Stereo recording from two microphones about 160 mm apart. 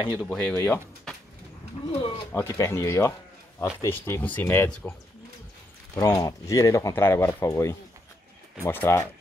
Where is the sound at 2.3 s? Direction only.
15° left (ahead or behind).